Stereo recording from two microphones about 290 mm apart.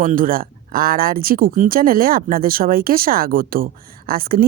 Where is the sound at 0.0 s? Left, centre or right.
Right.